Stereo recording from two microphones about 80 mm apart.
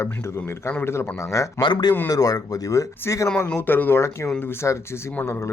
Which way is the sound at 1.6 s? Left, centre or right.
Left.